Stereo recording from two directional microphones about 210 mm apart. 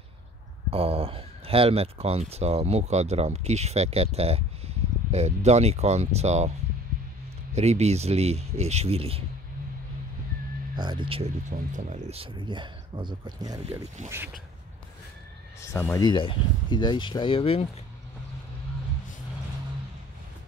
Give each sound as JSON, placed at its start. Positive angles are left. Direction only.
{"t": 0.7, "sound": "speech", "side_deg": -25}
{"t": 7.5, "sound": "speech", "side_deg": -30}
{"t": 10.8, "sound": "speech", "side_deg": -20}
{"t": 11.5, "sound": "speech", "side_deg": -35}
{"t": 15.7, "sound": "speech", "side_deg": 15}